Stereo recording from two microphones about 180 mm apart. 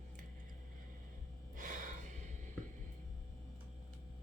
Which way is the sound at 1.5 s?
45° right (ahead or behind).